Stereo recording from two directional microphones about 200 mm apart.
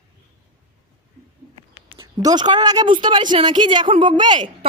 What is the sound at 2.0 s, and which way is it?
A woman's voice, 20° right (ahead or behind).